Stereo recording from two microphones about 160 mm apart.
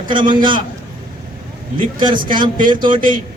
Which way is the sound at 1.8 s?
30° right (ahead or behind).